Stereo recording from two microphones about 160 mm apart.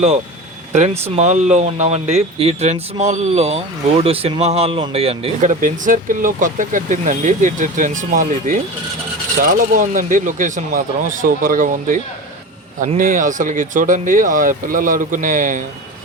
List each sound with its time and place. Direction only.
0.7 s speech: 45° right (ahead or behind)